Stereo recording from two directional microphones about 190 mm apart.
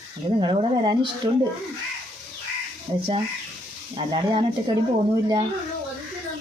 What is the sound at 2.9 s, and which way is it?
Speech, 30° right (ahead or behind).